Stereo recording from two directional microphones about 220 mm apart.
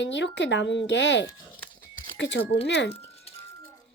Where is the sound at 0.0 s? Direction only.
55° left (ahead or behind).